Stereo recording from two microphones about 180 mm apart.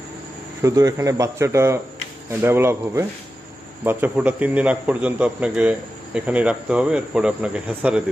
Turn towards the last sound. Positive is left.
turn(degrees=-5)  # may be behind; listen again after turning